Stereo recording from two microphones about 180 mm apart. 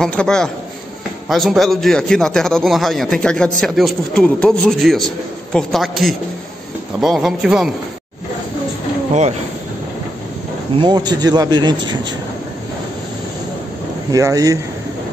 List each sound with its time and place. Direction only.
0.0 s speech: 5° left (ahead or behind)
10.8 s a man's voice: 25° right (ahead or behind)
14.1 s a man's voice: 20° right (ahead or behind)